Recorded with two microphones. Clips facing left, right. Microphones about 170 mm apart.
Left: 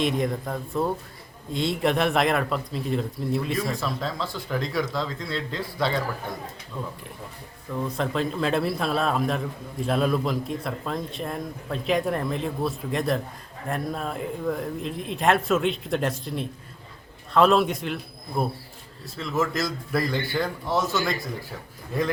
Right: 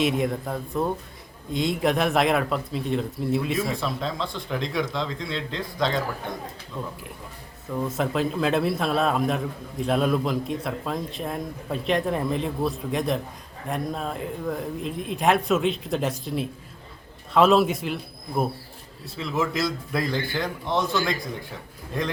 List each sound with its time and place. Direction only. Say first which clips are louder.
0.0 s a man's voice: right 1 dB; centre (ahead or behind)
7.7 s a man's voice: right 1 dB; 5° right (ahead or behind)